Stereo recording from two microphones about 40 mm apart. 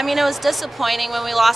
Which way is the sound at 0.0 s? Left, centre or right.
Centre.